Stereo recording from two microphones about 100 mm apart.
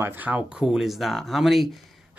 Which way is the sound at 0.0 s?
20° right (ahead or behind).